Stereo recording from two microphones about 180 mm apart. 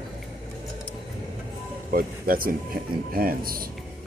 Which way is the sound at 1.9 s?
55° right (ahead or behind).